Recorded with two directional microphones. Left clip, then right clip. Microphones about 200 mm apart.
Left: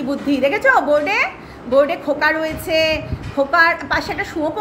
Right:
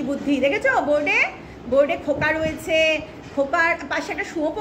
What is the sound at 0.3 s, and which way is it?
A woman's voice, 5° left (ahead or behind).